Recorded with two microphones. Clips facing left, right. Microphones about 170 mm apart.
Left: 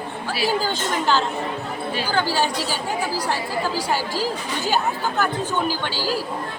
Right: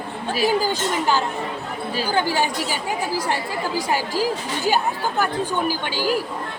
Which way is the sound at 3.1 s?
20° right (ahead or behind).